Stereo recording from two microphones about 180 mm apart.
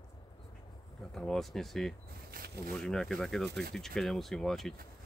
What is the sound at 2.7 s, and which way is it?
Speech, 5° left (ahead or behind).